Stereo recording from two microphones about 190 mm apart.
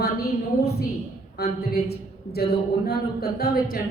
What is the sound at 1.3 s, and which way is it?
A woman's voice, 55° left (ahead or behind).